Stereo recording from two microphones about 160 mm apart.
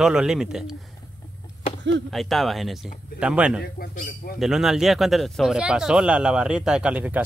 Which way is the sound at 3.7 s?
70° left (ahead or behind).